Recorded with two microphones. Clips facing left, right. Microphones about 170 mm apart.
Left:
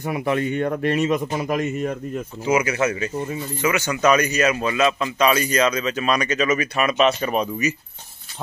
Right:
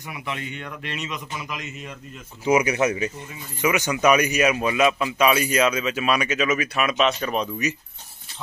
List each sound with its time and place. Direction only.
0.0 s speech: 50° left (ahead or behind)
2.4 s speech: 15° right (ahead or behind); by 7.7 s 5° left (ahead or behind)